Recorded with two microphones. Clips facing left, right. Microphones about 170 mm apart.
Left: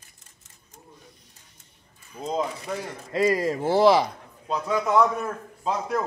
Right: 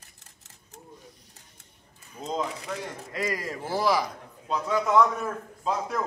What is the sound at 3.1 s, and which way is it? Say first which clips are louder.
Speech: left 10 dB; 30° left (ahead or behind).